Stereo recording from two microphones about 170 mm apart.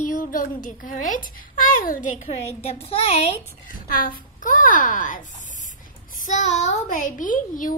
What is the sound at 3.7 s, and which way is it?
A child's voice, 55° left (ahead or behind).